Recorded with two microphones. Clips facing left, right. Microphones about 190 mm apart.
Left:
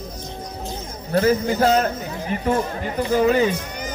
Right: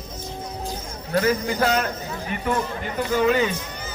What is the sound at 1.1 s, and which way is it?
Speech, 35° left (ahead or behind).